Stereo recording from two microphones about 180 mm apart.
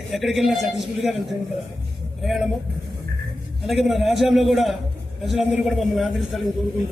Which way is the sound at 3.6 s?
Centre (ahead or behind).